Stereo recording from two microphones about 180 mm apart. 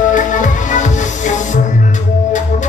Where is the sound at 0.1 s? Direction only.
45° left (ahead or behind).